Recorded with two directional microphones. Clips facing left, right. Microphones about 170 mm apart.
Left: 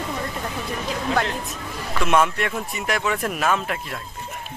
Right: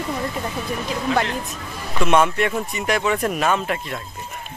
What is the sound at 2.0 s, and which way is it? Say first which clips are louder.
Speech: right 3 dB; centre (ahead or behind).